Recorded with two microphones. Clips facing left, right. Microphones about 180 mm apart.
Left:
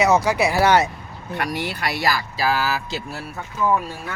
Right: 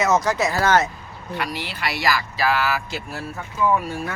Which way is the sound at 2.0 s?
35° left (ahead or behind).